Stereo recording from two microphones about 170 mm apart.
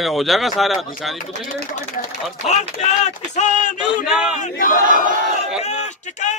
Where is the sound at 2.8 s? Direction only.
45° left (ahead or behind).